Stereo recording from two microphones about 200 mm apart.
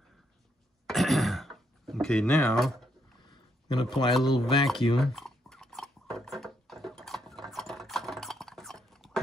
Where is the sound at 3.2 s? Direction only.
20° left (ahead or behind).